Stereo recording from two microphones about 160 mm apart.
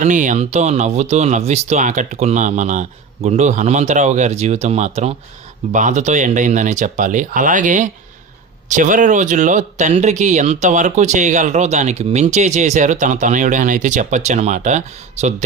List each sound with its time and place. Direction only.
0.0 s speech: 50° right (ahead or behind)